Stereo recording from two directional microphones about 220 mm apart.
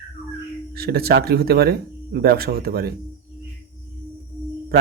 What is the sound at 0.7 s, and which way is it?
Speech, 45° right (ahead or behind).